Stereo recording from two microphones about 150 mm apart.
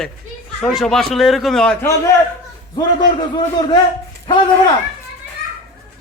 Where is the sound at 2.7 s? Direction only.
30° left (ahead or behind).